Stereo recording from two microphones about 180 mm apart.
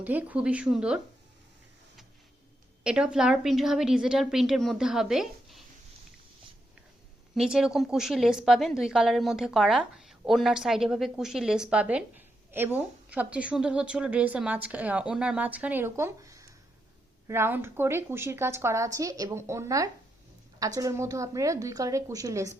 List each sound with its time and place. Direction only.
0.0 s a woman's voice: 10° right (ahead or behind)
2.8 s a woman's voice: 5° right (ahead or behind)
7.3 s a woman's voice: 5° right (ahead or behind)